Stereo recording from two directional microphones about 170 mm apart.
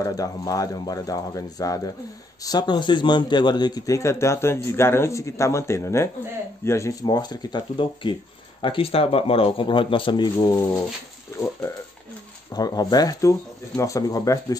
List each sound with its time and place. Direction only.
0.0 s a man's voice: 20° left (ahead or behind)